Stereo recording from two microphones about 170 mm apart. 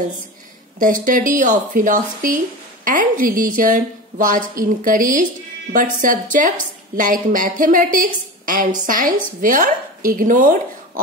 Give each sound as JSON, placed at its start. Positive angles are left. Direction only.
{"t": 0.7, "sound": "speech", "side_deg": -50}